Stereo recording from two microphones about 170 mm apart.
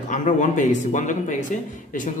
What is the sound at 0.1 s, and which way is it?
Speech, 45° left (ahead or behind).